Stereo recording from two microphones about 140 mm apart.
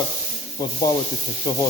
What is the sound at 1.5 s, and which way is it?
Speech, 30° left (ahead or behind).